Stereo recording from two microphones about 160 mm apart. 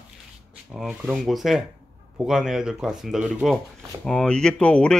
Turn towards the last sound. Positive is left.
turn(degrees=5)  # may be behind; listen again after turning